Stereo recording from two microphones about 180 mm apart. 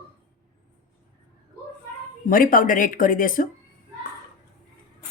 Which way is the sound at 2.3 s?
50° left (ahead or behind).